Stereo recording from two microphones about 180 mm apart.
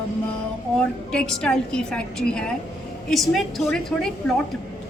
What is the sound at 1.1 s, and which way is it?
A woman's voice, 5° left (ahead or behind).